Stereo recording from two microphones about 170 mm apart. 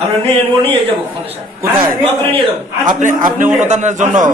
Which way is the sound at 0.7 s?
35° right (ahead or behind).